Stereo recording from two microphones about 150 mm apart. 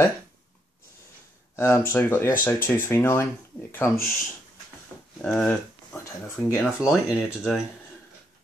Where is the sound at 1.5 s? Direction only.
15° left (ahead or behind).